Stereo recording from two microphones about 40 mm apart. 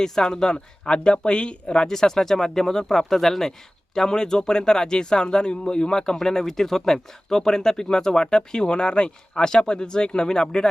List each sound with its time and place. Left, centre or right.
0.0 s speech: centre
1.9 s speech: centre